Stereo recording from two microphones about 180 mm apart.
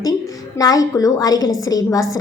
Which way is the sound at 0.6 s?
20° left (ahead or behind).